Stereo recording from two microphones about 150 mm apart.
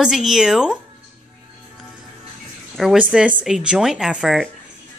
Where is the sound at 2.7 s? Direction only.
Centre (ahead or behind).